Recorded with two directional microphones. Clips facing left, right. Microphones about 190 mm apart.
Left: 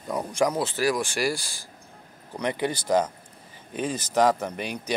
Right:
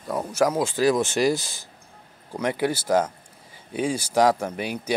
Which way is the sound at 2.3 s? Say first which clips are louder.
Right 3 dB; 10° right (ahead or behind).